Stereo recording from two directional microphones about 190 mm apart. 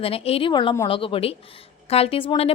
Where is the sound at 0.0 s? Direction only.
30° left (ahead or behind).